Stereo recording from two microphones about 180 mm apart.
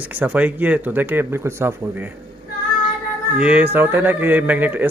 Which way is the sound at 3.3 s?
5° right (ahead or behind).